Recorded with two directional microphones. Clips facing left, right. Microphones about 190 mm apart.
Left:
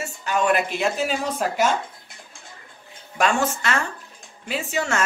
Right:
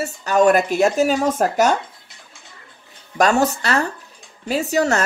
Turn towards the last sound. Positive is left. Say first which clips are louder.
# right 6 dB
turn(degrees=-40)  # may be behind; listen again after turning